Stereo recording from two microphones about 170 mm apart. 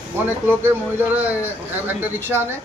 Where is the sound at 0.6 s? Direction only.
15° right (ahead or behind).